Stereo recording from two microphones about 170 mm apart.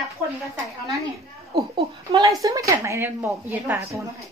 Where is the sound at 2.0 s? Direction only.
20° right (ahead or behind).